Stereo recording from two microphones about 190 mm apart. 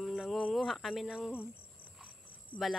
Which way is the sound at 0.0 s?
Centre (ahead or behind).